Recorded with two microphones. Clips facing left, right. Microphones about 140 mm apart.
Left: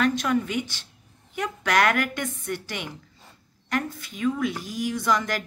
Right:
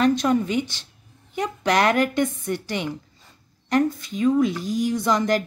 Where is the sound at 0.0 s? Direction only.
30° right (ahead or behind).